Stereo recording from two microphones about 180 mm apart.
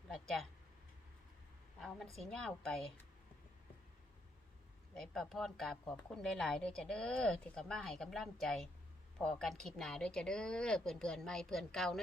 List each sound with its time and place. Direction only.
0.1 s a sound: centre (ahead or behind)
2.1 s speech: 5° left (ahead or behind)
4.9 s speech: 5° left (ahead or behind)